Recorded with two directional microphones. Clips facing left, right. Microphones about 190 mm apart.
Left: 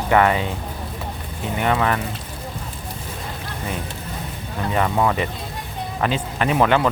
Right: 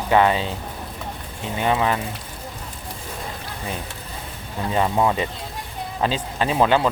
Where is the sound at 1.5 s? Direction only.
20° right (ahead or behind).